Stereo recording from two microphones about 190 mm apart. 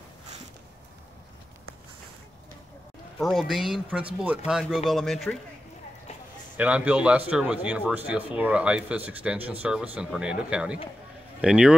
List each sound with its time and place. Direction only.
3.2 s speech: centre (ahead or behind)
6.5 s a man's voice: 5° right (ahead or behind)